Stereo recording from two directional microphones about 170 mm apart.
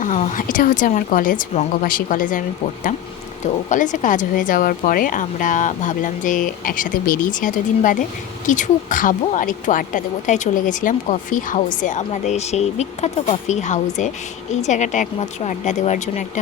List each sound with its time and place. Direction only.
0.0 s speech: 45° left (ahead or behind)
3.4 s speech: 45° left (ahead or behind)